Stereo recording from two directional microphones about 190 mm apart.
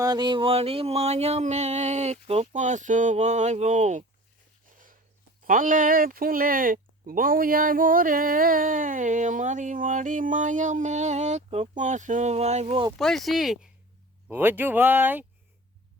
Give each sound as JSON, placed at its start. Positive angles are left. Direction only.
{"t": 0.0, "sound": "a sound", "side_deg": -20}
{"t": 5.5, "sound": "speech", "side_deg": -45}
{"t": 13.0, "sound": "speech", "side_deg": 0}